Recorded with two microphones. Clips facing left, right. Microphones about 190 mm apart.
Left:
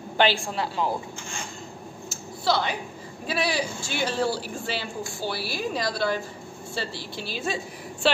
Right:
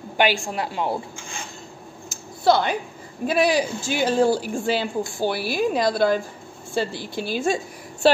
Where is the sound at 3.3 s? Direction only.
45° right (ahead or behind).